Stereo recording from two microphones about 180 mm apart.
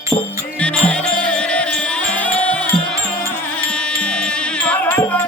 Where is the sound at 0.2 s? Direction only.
5° left (ahead or behind).